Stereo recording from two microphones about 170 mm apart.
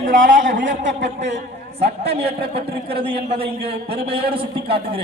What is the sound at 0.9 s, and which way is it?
A man's voice, 45° right (ahead or behind).